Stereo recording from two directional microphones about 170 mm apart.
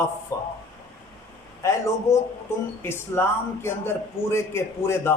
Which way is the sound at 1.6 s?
20° left (ahead or behind).